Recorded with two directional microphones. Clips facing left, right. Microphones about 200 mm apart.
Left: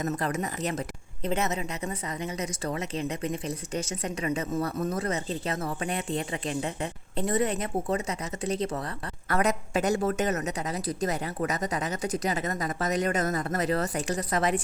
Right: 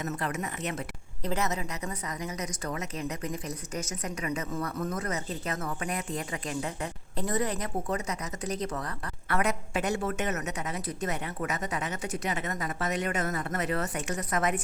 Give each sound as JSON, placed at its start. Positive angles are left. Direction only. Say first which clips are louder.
{"t": 0.0, "sound": "a woman's voice", "louder": "left 4 dB", "side_deg": 40}
{"t": 1.2, "sound": "a woman's voice", "louder": "left 2 dB", "side_deg": 25}
{"t": 9.3, "sound": "a woman's voice", "louder": "left 3 dB", "side_deg": 40}